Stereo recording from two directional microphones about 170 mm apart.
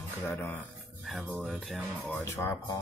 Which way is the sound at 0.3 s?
10° left (ahead or behind).